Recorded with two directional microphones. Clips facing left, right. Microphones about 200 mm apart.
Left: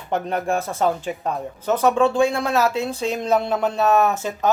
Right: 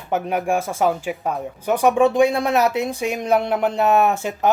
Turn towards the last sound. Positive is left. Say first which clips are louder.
# right 1 dB
turn(degrees=-15)  # may be behind; listen again after turning